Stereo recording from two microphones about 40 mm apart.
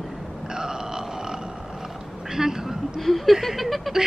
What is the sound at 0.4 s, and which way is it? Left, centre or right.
Burping, centre.